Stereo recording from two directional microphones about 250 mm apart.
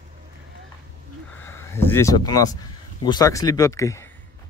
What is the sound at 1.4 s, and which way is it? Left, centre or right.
Speech, centre.